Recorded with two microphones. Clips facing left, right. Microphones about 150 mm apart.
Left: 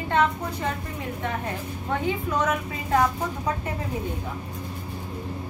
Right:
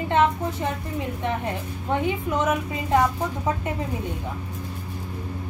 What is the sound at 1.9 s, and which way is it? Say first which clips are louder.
A woman's voice: right 2 dB; 20° right (ahead or behind).